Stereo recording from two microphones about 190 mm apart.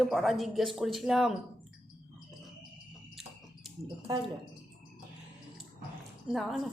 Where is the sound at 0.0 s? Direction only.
Centre (ahead or behind).